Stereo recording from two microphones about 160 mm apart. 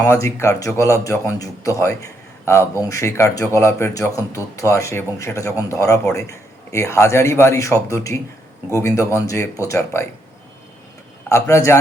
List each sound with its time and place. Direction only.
0.0 s a man's voice: 15° left (ahead or behind)
11.3 s a man's voice: 15° left (ahead or behind)